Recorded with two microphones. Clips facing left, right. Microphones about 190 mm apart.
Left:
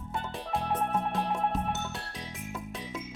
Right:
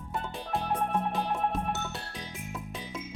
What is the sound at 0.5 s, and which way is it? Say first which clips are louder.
Music: even; centre (ahead or behind).